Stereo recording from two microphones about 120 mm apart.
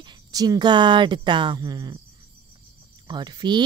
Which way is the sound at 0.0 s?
35° right (ahead or behind).